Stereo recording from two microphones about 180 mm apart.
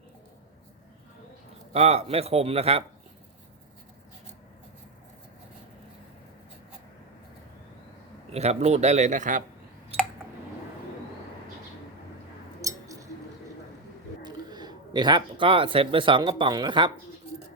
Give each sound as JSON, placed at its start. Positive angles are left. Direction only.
{"t": 1.7, "sound": "a man's voice", "side_deg": -35}
{"t": 8.3, "sound": "a man's voice", "side_deg": -35}
{"t": 12.6, "sound": "a sound", "side_deg": -20}
{"t": 14.2, "sound": "speech", "side_deg": -25}